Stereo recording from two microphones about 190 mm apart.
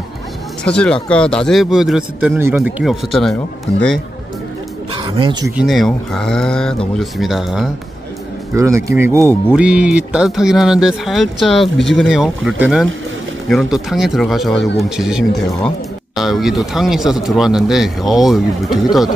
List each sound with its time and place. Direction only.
0.7 s speech: 5° left (ahead or behind); by 2.7 s 10° right (ahead or behind)
2.8 s speech: centre (ahead or behind)
4.9 s speech: 25° right (ahead or behind)
5.6 s speech: centre (ahead or behind)
8.5 s speech: 15° right (ahead or behind); by 18.9 s centre (ahead or behind)